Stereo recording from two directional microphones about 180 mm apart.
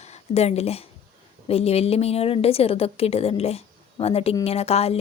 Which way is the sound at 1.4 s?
35° left (ahead or behind).